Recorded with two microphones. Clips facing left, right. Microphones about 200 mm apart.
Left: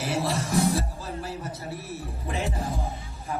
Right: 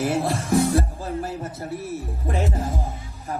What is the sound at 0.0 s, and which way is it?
Music, 50° right (ahead or behind).